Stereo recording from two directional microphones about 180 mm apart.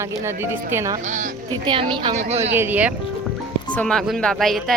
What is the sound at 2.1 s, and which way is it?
Speech, 40° right (ahead or behind).